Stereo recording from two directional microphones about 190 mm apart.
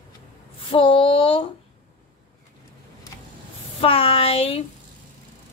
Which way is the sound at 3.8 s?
30° left (ahead or behind).